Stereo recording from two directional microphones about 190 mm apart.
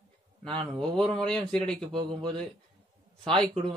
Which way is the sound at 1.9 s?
25° right (ahead or behind).